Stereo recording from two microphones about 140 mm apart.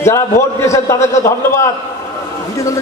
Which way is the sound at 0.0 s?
20° left (ahead or behind).